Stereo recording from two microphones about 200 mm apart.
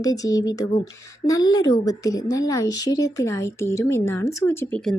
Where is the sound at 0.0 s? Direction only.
15° left (ahead or behind).